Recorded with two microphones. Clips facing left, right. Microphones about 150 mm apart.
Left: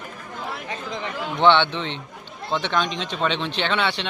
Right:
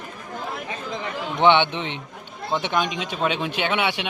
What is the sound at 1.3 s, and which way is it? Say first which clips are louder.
Speech: even; 15° right (ahead or behind).